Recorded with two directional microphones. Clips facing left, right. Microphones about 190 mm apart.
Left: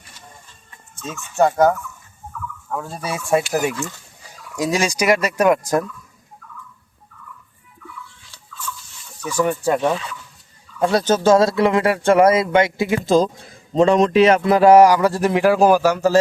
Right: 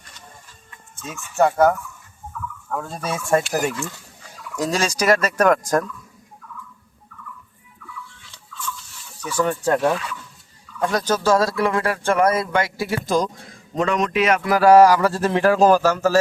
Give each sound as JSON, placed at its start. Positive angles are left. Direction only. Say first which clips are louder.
{"t": 1.4, "sound": "speech", "louder": "left 1 dB", "side_deg": 15}
{"t": 2.6, "sound": "speech", "louder": "even", "side_deg": 5}
{"t": 9.2, "sound": "speech", "louder": "left 2 dB", "side_deg": 15}
{"t": 10.8, "sound": "speech", "louder": "left 4 dB", "side_deg": 25}